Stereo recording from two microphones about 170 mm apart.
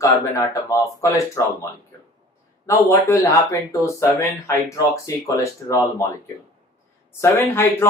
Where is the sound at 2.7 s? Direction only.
15° left (ahead or behind).